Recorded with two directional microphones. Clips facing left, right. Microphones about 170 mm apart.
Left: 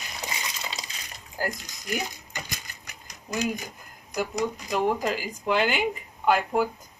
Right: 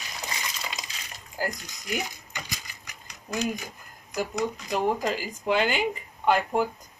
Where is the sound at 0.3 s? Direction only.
25° left (ahead or behind).